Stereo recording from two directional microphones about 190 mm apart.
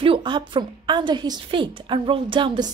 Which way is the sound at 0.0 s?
25° right (ahead or behind).